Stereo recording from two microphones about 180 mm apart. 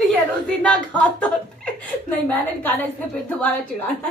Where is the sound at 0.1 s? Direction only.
5° left (ahead or behind).